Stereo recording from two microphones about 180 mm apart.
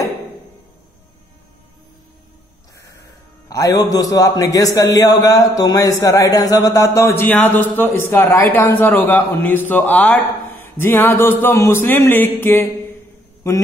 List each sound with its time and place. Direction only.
3.4 s a man's voice: 20° left (ahead or behind)